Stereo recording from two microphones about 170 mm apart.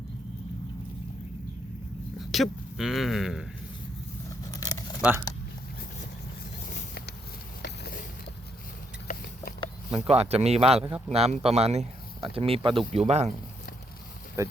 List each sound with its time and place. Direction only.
2.1 s speech: centre (ahead or behind)
4.5 s a sound: 20° left (ahead or behind)
4.9 s speech: 10° right (ahead or behind)
7.6 s a sound: 65° left (ahead or behind)
10.1 s speech: 35° right (ahead or behind)
14.4 s speech: 20° right (ahead or behind)